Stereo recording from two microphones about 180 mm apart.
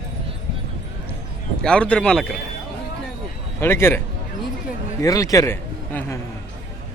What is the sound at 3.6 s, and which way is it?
Speech, 15° left (ahead or behind).